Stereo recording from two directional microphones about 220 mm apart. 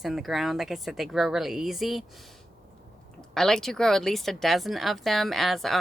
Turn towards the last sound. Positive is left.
turn(degrees=0)  # may be behind; listen again after turning